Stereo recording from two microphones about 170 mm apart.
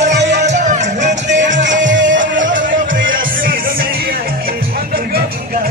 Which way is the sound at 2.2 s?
50° right (ahead or behind).